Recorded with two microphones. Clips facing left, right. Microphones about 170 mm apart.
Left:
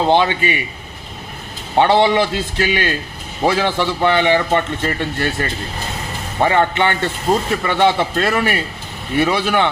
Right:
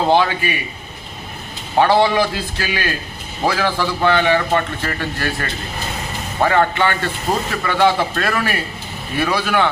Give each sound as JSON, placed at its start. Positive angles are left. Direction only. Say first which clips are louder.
{"t": 0.1, "sound": "a man's voice", "louder": "even", "side_deg": 20}
{"t": 1.8, "sound": "a man's voice", "louder": "left 1 dB", "side_deg": 20}